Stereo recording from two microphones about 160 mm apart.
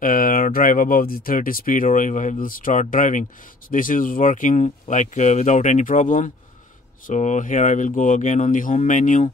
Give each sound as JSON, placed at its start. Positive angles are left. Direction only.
{"t": 0.0, "sound": "speech", "side_deg": 60}